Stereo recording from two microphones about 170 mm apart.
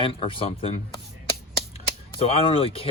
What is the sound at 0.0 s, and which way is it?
Speech, 30° left (ahead or behind).